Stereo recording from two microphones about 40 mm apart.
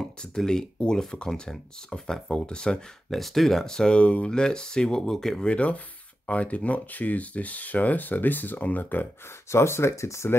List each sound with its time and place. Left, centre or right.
0.8 s speech: left
3.1 s speech: centre; by 4.3 s left
4.3 s speech: centre
5.4 s speech: left
9.6 s speech: left